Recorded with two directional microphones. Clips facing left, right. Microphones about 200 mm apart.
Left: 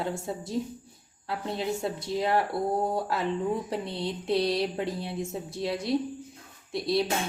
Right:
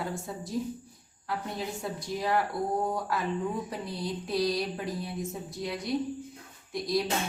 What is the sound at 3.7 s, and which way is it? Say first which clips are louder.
Speech: left 3 dB; 25° left (ahead or behind).